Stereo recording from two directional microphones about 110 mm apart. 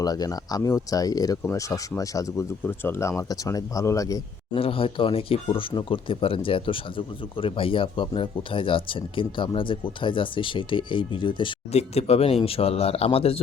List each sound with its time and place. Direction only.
0.0 s speech: 35° left (ahead or behind)
4.5 s speech: 55° left (ahead or behind)
11.7 s speech: 70° left (ahead or behind)